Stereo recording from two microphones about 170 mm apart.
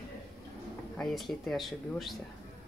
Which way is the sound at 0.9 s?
Centre (ahead or behind).